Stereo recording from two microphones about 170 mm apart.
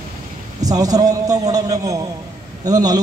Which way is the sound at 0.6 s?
20° right (ahead or behind).